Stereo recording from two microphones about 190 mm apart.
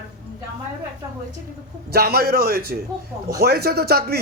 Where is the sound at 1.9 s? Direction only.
55° right (ahead or behind).